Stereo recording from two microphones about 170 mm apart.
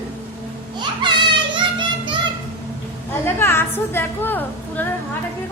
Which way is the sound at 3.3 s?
15° left (ahead or behind).